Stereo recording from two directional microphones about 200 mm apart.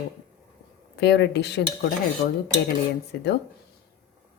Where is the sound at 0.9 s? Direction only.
55° left (ahead or behind).